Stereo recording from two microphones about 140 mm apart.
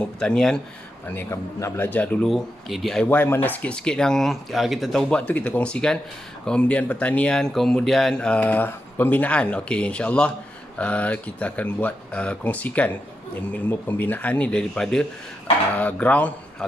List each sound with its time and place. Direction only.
0.0 s speech: 5° left (ahead or behind)
1.0 s speech: 15° left (ahead or behind)
2.2 s speech: centre (ahead or behind)
3.1 s speech: 15° left (ahead or behind)